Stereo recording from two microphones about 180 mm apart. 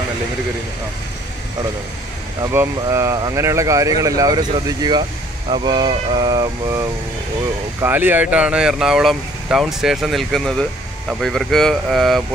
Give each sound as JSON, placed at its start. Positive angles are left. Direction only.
{"t": 2.4, "sound": "speech", "side_deg": -15}